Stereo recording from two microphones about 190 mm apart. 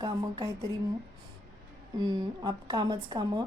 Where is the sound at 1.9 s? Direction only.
20° right (ahead or behind).